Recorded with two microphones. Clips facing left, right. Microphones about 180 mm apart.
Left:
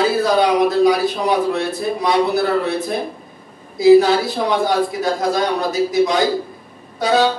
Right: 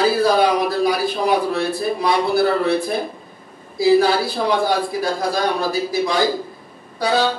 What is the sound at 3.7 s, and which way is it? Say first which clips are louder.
A man's voice: left 4 dB; 20° left (ahead or behind).